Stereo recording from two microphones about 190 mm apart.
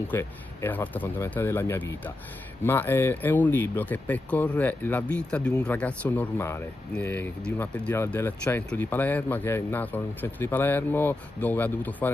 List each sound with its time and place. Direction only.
0.1 s speech: 10° left (ahead or behind)